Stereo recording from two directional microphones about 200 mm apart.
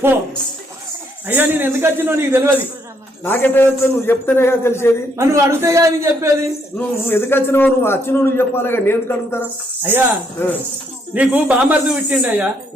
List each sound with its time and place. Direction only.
1.3 s a man's voice: 10° right (ahead or behind)
3.2 s a man's voice: 10° left (ahead or behind)
5.1 s a man's voice: 15° right (ahead or behind)
6.7 s a man's voice: 10° left (ahead or behind)
11.1 s a man's voice: 5° right (ahead or behind)